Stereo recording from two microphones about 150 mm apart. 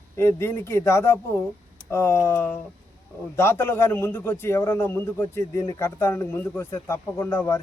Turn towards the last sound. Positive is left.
turn(degrees=15)  # may be behind; listen again after turning